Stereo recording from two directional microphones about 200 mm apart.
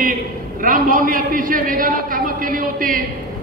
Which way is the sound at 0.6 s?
45° right (ahead or behind).